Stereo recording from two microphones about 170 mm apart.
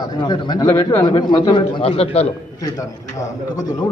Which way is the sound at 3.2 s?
20° left (ahead or behind).